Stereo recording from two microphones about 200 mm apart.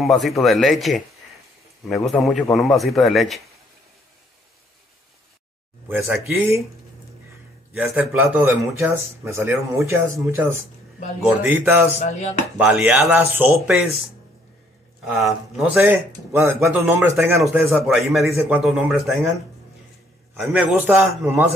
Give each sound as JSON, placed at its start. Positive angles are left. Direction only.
{"t": 0.0, "sound": "speech", "side_deg": 0}
{"t": 2.0, "sound": "speech", "side_deg": 0}
{"t": 5.9, "sound": "speech", "side_deg": -10}
{"t": 7.7, "sound": "speech", "side_deg": -5}
{"t": 12.0, "sound": "music", "side_deg": 35}
{"t": 12.5, "sound": "speech", "side_deg": -5}
{"t": 15.0, "sound": "speech", "side_deg": 0}
{"t": 17.6, "sound": "speech", "side_deg": 0}
{"t": 20.3, "sound": "speech", "side_deg": -5}